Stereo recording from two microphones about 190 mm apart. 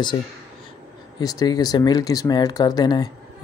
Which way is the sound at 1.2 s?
20° left (ahead or behind).